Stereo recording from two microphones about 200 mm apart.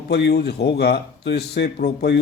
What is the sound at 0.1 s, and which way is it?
A man's voice, 55° left (ahead or behind).